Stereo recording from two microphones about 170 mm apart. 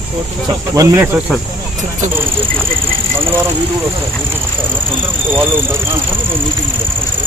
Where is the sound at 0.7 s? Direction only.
20° right (ahead or behind).